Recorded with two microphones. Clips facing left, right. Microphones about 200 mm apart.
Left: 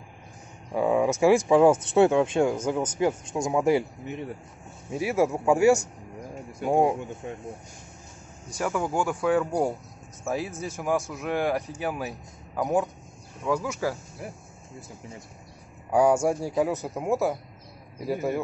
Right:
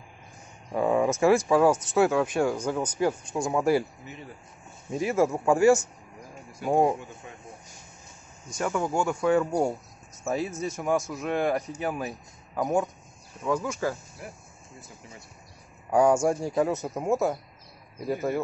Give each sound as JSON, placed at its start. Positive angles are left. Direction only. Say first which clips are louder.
{"t": 0.7, "sound": "speech", "louder": "left 1 dB", "side_deg": 5}
{"t": 4.0, "sound": "speech", "louder": "left 8 dB", "side_deg": 60}
{"t": 4.9, "sound": "speech", "louder": "even", "side_deg": 10}
{"t": 8.5, "sound": "a man's voice", "louder": "even", "side_deg": 5}
{"t": 15.9, "sound": "speech", "louder": "even", "side_deg": 5}